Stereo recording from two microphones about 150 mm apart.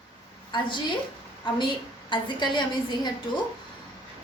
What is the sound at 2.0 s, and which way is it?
A woman's voice, 30° left (ahead or behind).